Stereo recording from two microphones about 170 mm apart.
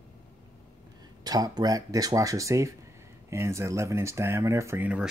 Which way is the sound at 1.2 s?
25° right (ahead or behind).